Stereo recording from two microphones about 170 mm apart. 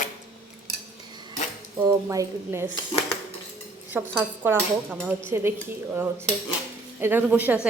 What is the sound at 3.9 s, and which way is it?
A woman's voice, 10° right (ahead or behind).